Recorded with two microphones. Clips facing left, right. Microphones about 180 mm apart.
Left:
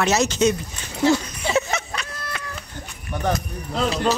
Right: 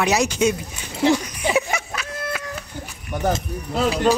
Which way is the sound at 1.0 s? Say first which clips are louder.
Right 1 dB; 15° right (ahead or behind).